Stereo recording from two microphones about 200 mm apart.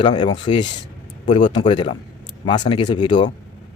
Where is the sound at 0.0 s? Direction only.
20° left (ahead or behind).